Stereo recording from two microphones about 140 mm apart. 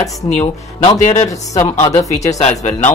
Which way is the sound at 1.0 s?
50° left (ahead or behind).